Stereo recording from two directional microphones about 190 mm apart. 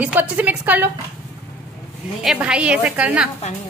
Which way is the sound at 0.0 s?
10° right (ahead or behind).